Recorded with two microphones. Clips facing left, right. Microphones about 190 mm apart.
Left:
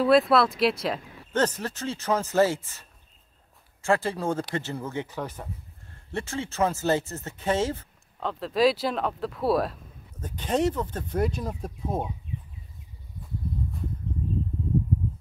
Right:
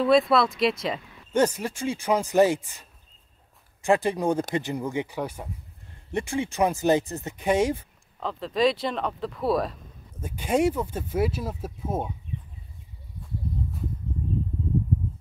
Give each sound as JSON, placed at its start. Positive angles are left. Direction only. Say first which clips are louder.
{"t": 0.0, "sound": "speech", "louder": "even", "side_deg": 0}
{"t": 1.3, "sound": "speech", "louder": "right 3 dB", "side_deg": -10}
{"t": 8.2, "sound": "speech", "louder": "left 1 dB", "side_deg": 0}
{"t": 10.2, "sound": "speech", "louder": "right 2 dB", "side_deg": -10}